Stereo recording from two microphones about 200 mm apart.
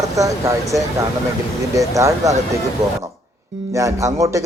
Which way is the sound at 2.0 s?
15° right (ahead or behind).